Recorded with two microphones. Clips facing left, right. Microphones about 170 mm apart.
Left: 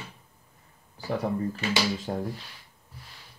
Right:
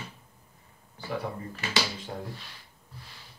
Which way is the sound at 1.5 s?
40° left (ahead or behind).